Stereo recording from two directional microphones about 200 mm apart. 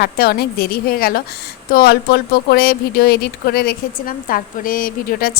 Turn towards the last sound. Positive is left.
turn(degrees=45)  # may be behind; listen again after turning